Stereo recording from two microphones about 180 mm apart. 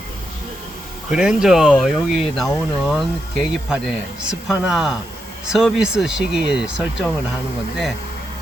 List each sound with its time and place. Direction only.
1.1 s speech: 5° right (ahead or behind)